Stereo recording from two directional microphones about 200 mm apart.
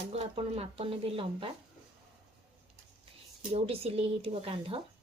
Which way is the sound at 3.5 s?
30° right (ahead or behind).